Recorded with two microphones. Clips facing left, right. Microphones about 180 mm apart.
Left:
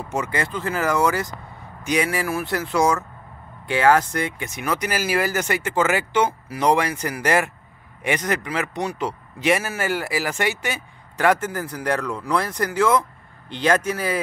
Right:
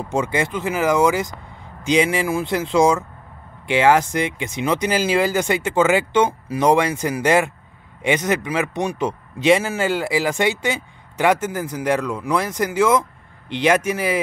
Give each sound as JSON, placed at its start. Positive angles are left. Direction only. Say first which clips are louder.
{"t": 0.2, "sound": "speech", "louder": "right 4 dB", "side_deg": -20}
{"t": 8.5, "sound": "speech", "louder": "right 4 dB", "side_deg": -15}